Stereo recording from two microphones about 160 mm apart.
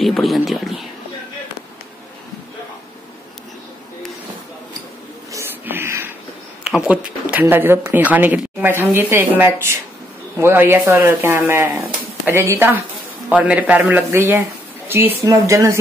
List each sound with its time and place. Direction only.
0.0 s speech: centre (ahead or behind)
5.3 s a sound: 15° right (ahead or behind)
6.6 s speech: 5° right (ahead or behind)